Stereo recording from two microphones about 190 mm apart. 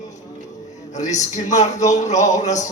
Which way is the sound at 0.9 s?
40° left (ahead or behind).